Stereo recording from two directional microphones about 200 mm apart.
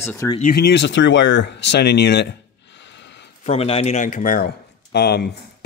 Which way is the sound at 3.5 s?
30° left (ahead or behind).